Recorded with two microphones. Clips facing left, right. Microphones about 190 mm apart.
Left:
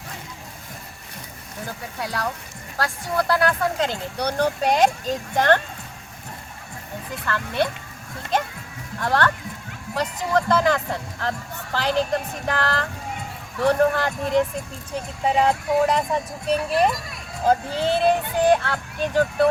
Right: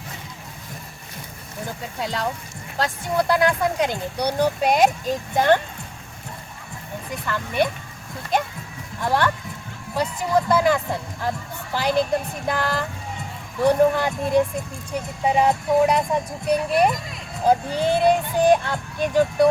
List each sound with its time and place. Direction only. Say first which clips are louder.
2.0 s speech: right 2 dB; 20° right (ahead or behind)
7.3 s speech: right 1 dB; 15° right (ahead or behind)